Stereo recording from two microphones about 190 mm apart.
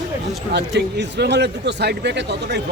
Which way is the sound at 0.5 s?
65° right (ahead or behind).